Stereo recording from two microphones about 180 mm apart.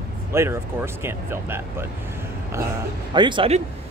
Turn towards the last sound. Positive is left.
turn(degrees=-30)  # may be behind; listen again after turning